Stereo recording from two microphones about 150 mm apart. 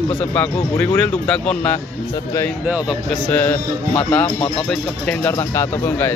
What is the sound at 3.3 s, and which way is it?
Speech, 10° left (ahead or behind).